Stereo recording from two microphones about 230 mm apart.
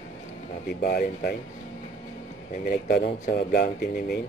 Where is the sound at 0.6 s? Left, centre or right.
Left.